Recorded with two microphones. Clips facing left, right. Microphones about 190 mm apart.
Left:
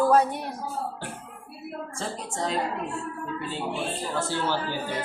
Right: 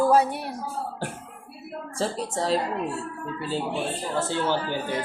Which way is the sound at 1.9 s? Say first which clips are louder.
Right 7 dB; 35° right (ahead or behind).